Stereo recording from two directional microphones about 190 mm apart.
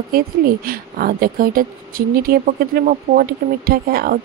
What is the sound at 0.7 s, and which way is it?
Speech, 50° right (ahead or behind).